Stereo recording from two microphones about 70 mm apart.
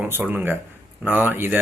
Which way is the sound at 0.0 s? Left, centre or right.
Right.